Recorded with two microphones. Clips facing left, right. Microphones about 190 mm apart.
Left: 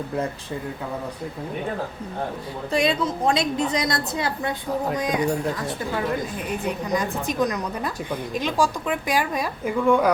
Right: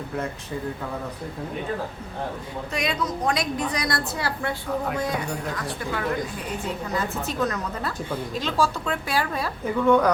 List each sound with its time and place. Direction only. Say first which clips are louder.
2.7 s a woman's voice: left 5 dB; 30° left (ahead or behind)
6.7 s a woman's voice: left 3 dB; 15° left (ahead or behind)